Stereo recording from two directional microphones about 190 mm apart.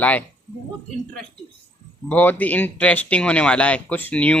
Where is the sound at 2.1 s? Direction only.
10° left (ahead or behind).